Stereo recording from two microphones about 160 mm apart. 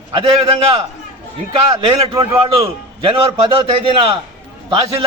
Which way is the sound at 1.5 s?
30° right (ahead or behind).